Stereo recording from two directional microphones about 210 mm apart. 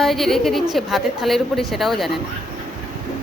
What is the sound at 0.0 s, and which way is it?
A woman's voice, centre (ahead or behind).